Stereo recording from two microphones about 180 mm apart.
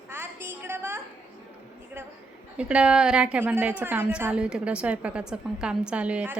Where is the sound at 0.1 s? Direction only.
15° right (ahead or behind).